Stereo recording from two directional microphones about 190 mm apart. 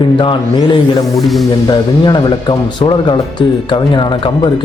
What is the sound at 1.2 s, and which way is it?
Music, centre (ahead or behind).